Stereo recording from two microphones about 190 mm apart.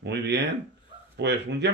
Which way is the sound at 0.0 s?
65° right (ahead or behind).